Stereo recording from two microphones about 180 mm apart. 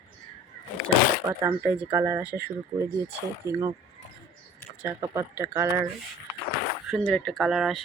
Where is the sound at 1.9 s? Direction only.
15° right (ahead or behind).